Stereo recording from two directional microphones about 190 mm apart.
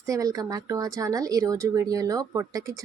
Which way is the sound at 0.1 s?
20° right (ahead or behind).